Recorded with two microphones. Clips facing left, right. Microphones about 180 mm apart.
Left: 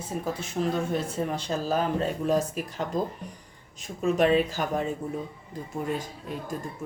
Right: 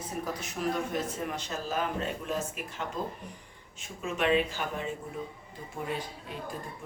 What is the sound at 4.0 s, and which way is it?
Speech, 40° left (ahead or behind).